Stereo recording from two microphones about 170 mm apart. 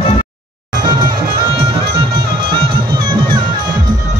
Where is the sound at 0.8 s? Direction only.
25° right (ahead or behind).